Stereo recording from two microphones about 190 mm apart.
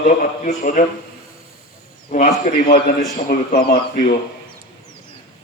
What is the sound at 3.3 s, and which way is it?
Speech, 50° left (ahead or behind).